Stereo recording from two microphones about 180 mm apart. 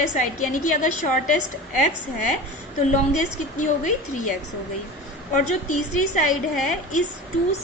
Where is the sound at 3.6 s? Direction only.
45° left (ahead or behind).